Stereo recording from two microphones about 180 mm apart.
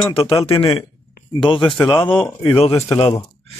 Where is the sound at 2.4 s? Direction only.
30° left (ahead or behind).